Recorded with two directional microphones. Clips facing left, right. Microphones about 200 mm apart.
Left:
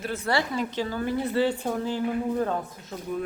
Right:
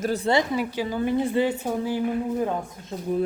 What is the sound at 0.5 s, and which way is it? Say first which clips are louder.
A woman's voice: right 2 dB; 10° right (ahead or behind).